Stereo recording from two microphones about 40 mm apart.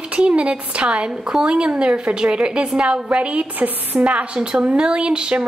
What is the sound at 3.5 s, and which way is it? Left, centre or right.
Speech, right.